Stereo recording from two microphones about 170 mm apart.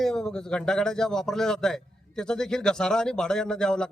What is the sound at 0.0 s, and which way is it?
Speech, centre (ahead or behind).